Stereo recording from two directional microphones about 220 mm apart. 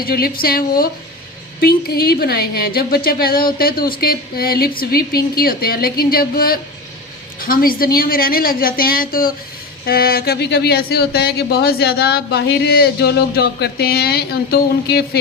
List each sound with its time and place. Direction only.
0.0 s a woman's voice: 45° left (ahead or behind)